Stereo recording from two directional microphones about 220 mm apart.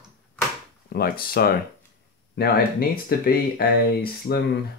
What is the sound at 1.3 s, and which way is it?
Speech, 45° left (ahead or behind).